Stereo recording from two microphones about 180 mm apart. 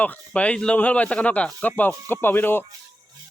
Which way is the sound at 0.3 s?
5° left (ahead or behind).